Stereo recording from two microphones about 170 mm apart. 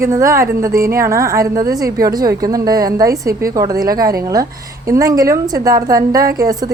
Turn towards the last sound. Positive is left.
turn(degrees=-20)  # may be behind; listen again after turning